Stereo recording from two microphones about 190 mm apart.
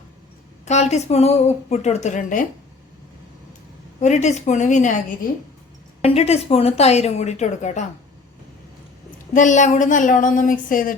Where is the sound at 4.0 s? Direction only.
40° left (ahead or behind).